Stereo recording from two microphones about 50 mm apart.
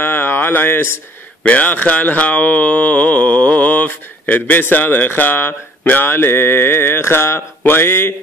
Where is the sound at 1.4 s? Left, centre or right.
Left.